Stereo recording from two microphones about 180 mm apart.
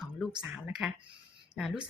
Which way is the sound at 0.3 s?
5° right (ahead or behind).